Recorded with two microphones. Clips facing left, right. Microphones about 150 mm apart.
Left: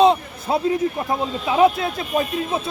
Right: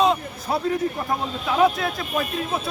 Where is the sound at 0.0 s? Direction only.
25° left (ahead or behind).